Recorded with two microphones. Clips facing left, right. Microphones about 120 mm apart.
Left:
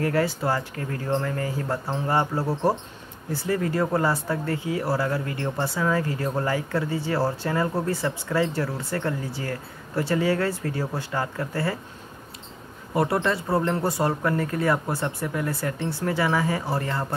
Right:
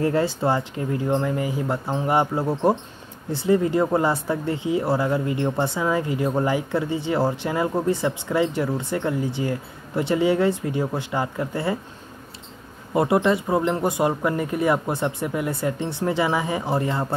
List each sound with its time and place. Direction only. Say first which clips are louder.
0.0 s speech: right 3 dB; 25° right (ahead or behind)
12.9 s speech: right 4 dB; 20° right (ahead or behind)